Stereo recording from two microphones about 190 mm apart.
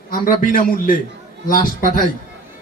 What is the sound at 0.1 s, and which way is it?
Speech, 50° left (ahead or behind).